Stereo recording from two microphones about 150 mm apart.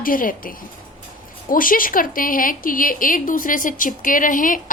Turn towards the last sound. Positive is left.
turn(degrees=65)  # may be behind; listen again after turning